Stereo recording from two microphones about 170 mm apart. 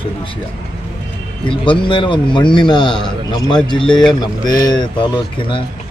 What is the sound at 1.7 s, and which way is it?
Speech, 30° left (ahead or behind).